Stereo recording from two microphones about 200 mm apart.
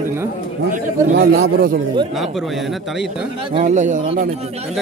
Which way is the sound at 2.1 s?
Centre (ahead or behind).